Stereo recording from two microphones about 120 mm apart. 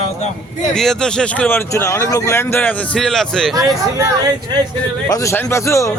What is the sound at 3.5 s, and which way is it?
Speech, 30° right (ahead or behind).